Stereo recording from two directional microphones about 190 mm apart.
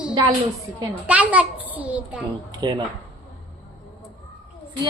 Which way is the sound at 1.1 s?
5° right (ahead or behind).